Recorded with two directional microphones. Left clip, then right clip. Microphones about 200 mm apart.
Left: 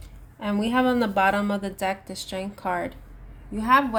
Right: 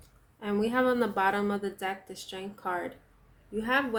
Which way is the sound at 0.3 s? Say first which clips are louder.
Left 4 dB; 40° left (ahead or behind).